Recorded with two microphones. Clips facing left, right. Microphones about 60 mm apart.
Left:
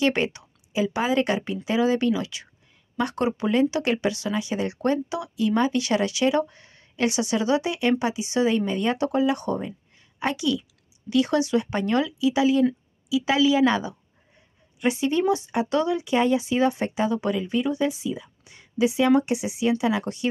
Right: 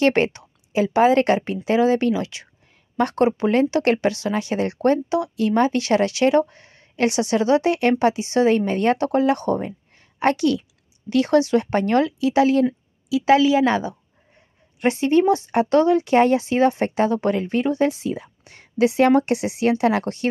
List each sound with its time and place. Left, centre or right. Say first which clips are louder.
0.0 s a woman's voice: right 5 dB; right
11.1 s speech: right 4 dB; right
14.8 s speech: right 5 dB; right